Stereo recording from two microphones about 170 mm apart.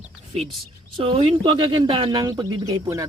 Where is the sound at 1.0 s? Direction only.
30° right (ahead or behind).